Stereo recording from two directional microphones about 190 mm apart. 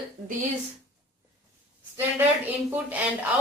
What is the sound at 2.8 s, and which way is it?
Speech, 10° right (ahead or behind).